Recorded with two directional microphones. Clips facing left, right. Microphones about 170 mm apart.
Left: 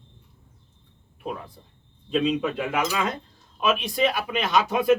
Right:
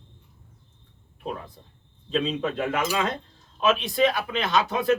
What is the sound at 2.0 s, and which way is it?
Speech, 10° left (ahead or behind).